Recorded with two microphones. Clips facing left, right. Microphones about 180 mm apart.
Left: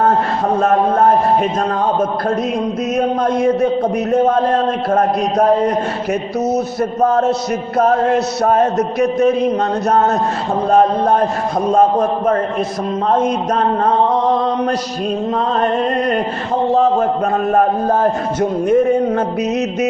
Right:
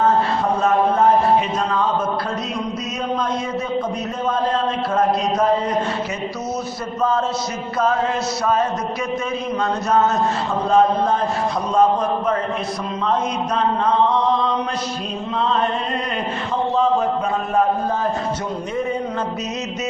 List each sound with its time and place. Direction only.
0.6 s a man's voice: 55° left (ahead or behind)
3.2 s a man's voice: 55° left (ahead or behind)
7.0 s a man's voice: 60° left (ahead or behind)
10.7 s a man's voice: 55° left (ahead or behind)
13.1 s mantra: 45° left (ahead or behind)
15.4 s a man's voice: 45° left (ahead or behind)
16.7 s a sound: 50° left (ahead or behind)
17.5 s a man's voice: 50° left (ahead or behind)